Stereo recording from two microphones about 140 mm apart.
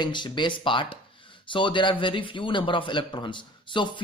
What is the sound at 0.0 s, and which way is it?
A man's voice, 35° left (ahead or behind).